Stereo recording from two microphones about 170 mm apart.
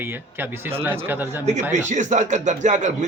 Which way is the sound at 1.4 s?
45° right (ahead or behind).